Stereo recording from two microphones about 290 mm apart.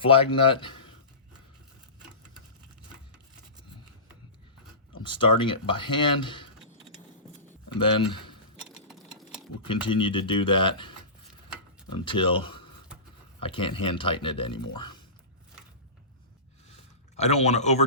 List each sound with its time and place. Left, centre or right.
0.0 s speech: centre
5.0 s speech: centre
7.7 s speech: centre
8.9 s a sound: centre
9.6 s speech: centre
17.2 s speech: left